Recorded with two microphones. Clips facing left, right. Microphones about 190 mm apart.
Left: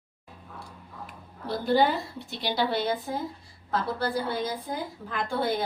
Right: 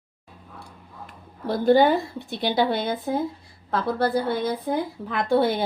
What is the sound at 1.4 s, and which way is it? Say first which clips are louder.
A woman's voice: right 6 dB; 50° right (ahead or behind).